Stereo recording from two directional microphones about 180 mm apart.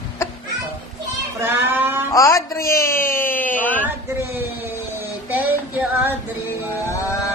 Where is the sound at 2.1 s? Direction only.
20° left (ahead or behind).